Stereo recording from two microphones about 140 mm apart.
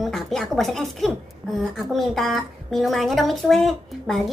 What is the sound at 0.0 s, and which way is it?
Speech, centre (ahead or behind).